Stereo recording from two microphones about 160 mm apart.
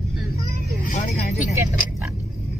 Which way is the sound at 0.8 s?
45° left (ahead or behind).